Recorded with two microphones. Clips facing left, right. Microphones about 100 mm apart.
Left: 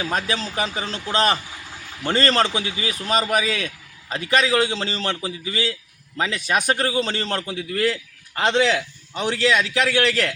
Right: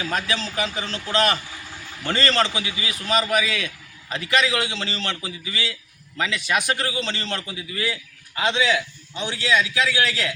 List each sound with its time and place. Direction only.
0.1 s a man's voice: 35° left (ahead or behind); by 10.3 s 60° left (ahead or behind)